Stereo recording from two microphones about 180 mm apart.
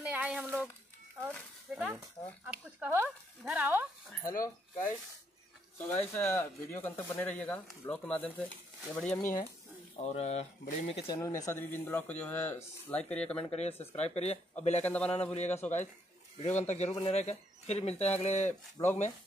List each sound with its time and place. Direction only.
0.0 s a sound: 5° right (ahead or behind)
1.8 s speech: 10° right (ahead or behind)
4.4 s speech: 15° left (ahead or behind)
10.0 s speech: 40° left (ahead or behind)
11.1 s speech: 20° left (ahead or behind)
13.4 s speech: 35° left (ahead or behind)
14.9 s speech: 10° left (ahead or behind)
15.3 s speech: 40° left (ahead or behind)
18.8 s speech: 20° left (ahead or behind)